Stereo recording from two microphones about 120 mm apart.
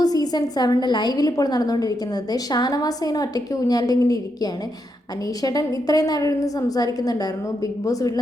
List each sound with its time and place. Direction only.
0.0 s a woman's voice: 30° left (ahead or behind)
5.4 s a woman's voice: 30° left (ahead or behind)